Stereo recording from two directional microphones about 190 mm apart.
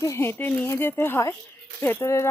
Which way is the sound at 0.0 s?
15° left (ahead or behind).